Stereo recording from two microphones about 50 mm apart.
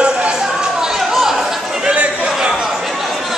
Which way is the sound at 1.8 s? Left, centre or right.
Right.